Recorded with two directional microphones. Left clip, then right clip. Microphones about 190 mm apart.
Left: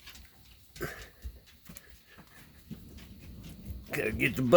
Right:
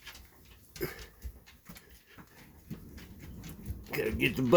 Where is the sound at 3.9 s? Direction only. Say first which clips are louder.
Left 1 dB; 40° left (ahead or behind).